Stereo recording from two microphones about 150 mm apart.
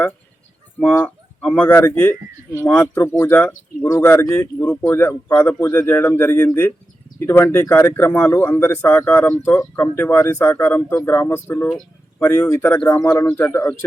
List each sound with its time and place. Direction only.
0.8 s speech: 10° left (ahead or behind)